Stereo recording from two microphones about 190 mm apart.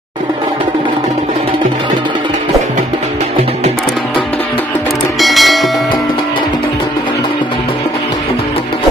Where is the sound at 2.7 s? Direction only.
35° right (ahead or behind).